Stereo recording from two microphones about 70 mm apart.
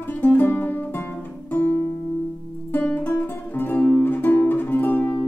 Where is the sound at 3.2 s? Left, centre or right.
Left.